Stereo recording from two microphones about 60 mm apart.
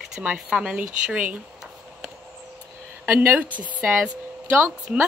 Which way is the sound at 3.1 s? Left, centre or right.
Right.